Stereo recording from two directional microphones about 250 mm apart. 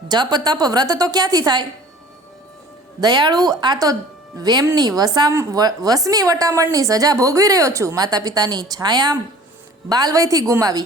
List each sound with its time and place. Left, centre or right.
0.1 s a woman's voice: centre
3.0 s a woman's voice: centre